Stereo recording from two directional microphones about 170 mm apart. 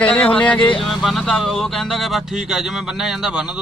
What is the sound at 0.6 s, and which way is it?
Speech, 30° left (ahead or behind).